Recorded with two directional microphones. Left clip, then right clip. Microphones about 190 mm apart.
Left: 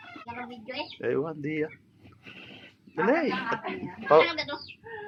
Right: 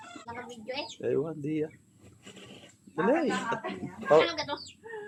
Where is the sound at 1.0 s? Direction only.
Centre (ahead or behind).